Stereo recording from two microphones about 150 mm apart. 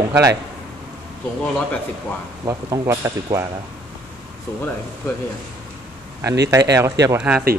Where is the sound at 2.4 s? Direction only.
20° right (ahead or behind).